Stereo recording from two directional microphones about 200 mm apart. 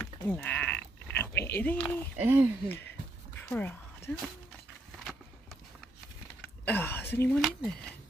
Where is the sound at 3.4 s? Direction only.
10° left (ahead or behind).